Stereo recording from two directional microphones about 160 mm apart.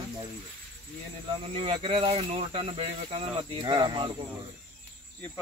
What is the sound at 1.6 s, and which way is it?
Speech, 35° right (ahead or behind).